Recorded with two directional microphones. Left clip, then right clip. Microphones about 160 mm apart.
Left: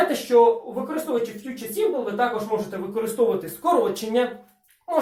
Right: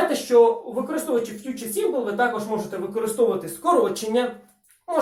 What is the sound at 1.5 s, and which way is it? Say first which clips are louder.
Speech: right 3 dB; centre (ahead or behind).